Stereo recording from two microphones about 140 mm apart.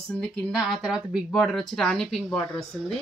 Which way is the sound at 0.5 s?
5° right (ahead or behind).